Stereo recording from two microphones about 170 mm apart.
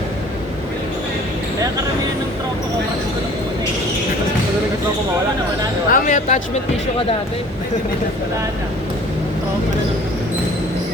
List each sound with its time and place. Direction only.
5.9 s speech: 50° left (ahead or behind)